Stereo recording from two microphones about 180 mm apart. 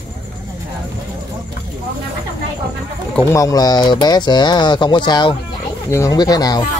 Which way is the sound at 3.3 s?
20° left (ahead or behind).